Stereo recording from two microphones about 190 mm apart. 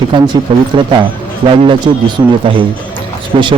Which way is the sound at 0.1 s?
25° right (ahead or behind).